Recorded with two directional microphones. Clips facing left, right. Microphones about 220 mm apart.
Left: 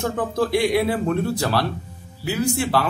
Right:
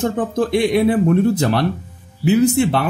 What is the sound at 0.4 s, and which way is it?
Speech, 20° right (ahead or behind).